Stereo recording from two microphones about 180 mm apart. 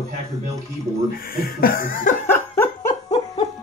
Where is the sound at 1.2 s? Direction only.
55° left (ahead or behind).